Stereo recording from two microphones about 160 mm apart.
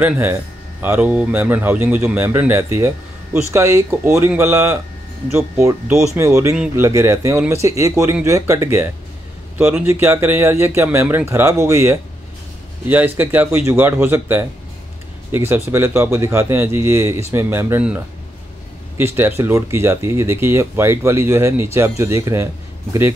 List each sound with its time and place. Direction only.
0.0 s speech: 15° right (ahead or behind)